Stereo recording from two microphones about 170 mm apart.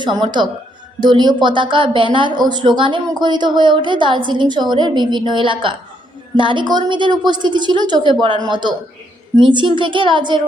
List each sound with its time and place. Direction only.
0.0 s a woman's voice: 25° right (ahead or behind)